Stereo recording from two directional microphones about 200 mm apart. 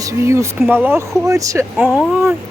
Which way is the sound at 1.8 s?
5° right (ahead or behind).